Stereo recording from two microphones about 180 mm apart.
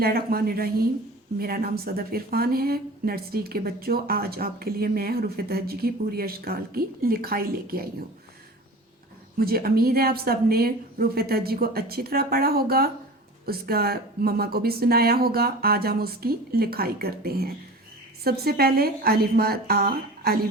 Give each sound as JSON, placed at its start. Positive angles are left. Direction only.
{"t": 0.0, "sound": "speech", "side_deg": -60}
{"t": 9.4, "sound": "speech", "side_deg": -55}